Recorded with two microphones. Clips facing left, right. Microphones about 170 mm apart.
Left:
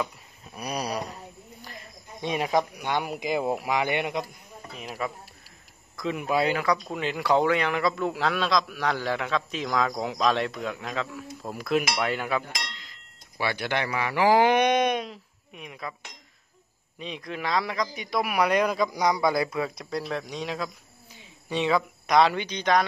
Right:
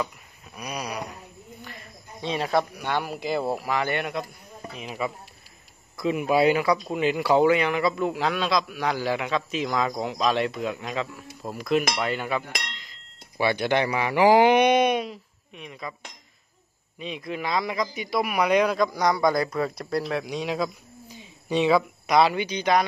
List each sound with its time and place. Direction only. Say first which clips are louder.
0.6 s a sound: left 2 dB; 35° left (ahead or behind)
2.2 s speech: right 1 dB; 15° left (ahead or behind)
4.7 s speech: right 2 dB; 5° right (ahead or behind)
13.4 s speech: right 5 dB; 20° right (ahead or behind)
15.5 s speech: right 1 dB; 5° left (ahead or behind)
17.0 s speech: right 2 dB; 5° right (ahead or behind)